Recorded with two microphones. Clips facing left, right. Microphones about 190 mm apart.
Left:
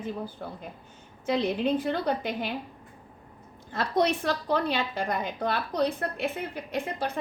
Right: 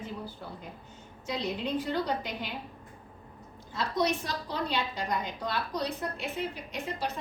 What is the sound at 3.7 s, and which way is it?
A woman's voice, 55° left (ahead or behind).